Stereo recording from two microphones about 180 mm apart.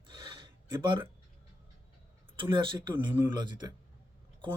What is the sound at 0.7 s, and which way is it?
Speech, 25° right (ahead or behind).